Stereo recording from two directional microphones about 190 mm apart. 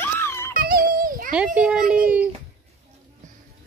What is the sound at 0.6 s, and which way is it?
Music, 50° right (ahead or behind).